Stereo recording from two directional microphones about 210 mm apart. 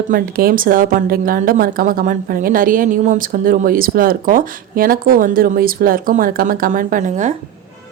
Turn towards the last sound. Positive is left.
turn(degrees=-35)  # may be behind; listen again after turning